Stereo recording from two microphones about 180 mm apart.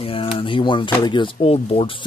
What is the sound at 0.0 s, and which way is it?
Speech, 30° left (ahead or behind).